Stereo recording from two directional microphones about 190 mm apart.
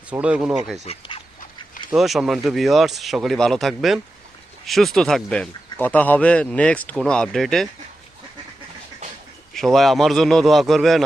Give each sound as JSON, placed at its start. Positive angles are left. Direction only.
{"t": 0.1, "sound": "speech", "side_deg": -5}
{"t": 0.9, "sound": "duck", "side_deg": 25}
{"t": 1.9, "sound": "speech", "side_deg": 0}
{"t": 9.6, "sound": "speech", "side_deg": 0}